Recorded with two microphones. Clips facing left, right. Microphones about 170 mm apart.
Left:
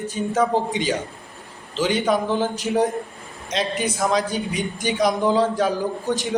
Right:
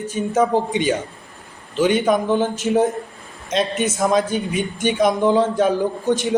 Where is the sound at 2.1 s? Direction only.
20° right (ahead or behind).